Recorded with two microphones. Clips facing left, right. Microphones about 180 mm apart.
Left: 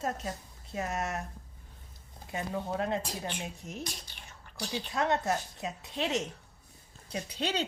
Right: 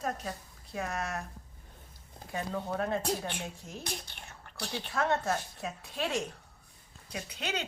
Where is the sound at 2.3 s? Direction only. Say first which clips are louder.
Even; 20° left (ahead or behind).